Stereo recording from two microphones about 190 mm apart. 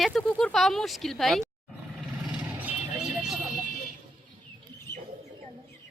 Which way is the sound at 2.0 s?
5° right (ahead or behind).